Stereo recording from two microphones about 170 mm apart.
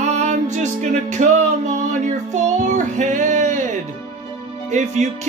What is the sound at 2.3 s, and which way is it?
Child singing, 45° right (ahead or behind).